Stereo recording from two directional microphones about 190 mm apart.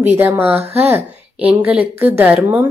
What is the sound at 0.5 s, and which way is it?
Speech, 35° right (ahead or behind).